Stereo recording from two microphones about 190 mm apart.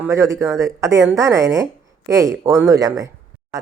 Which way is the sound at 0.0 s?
15° right (ahead or behind).